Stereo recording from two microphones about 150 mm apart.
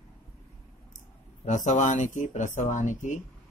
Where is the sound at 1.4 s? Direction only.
55° left (ahead or behind).